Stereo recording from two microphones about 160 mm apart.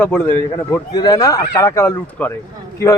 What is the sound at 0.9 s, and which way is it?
A man's voice, 25° left (ahead or behind).